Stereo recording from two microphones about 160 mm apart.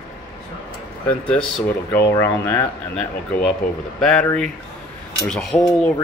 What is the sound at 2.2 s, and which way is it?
Speech, 10° left (ahead or behind).